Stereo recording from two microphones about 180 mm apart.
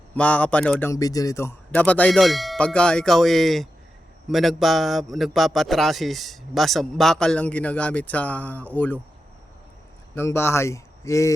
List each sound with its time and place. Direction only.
0.2 s a man's voice: 5° left (ahead or behind)
10.2 s a man's voice: 15° left (ahead or behind)